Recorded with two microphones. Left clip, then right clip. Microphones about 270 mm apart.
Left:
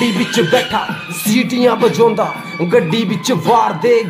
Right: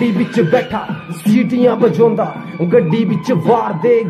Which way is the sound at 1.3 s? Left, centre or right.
Centre.